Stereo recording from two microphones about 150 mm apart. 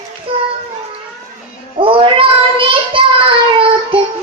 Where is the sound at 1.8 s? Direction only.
35° right (ahead or behind).